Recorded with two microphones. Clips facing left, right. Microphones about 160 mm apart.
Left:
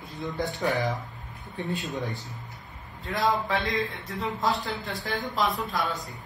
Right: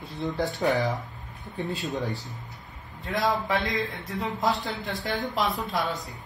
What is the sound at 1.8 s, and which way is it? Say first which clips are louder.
Speech: right 2 dB; centre (ahead or behind).